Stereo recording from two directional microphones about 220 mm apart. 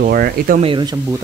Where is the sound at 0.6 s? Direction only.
20° right (ahead or behind).